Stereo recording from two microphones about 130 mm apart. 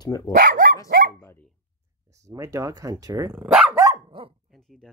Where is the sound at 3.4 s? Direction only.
10° right (ahead or behind).